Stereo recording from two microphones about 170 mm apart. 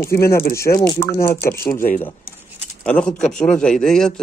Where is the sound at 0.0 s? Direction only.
15° left (ahead or behind).